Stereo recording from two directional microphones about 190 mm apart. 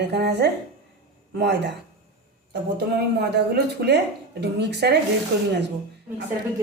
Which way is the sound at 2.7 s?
60° right (ahead or behind).